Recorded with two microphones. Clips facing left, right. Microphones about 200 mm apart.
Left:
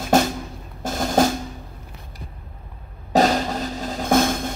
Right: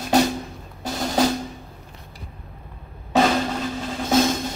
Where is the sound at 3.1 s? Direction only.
40° left (ahead or behind).